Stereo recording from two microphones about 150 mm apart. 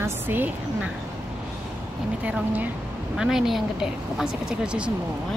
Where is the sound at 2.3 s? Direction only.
10° right (ahead or behind).